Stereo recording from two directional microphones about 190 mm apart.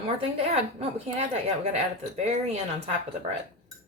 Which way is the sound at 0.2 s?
30° right (ahead or behind).